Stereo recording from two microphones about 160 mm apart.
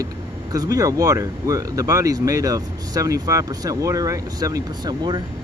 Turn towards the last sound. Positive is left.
turn(degrees=-25)  # may be behind; listen again after turning